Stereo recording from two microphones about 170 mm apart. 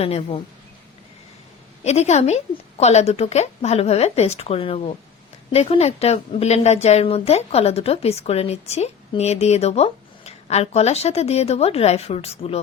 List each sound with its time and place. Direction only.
0.0 s a woman's voice: 40° left (ahead or behind)
1.8 s a woman's voice: 40° left (ahead or behind)